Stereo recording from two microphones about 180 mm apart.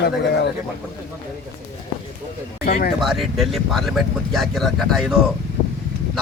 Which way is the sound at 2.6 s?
55° left (ahead or behind).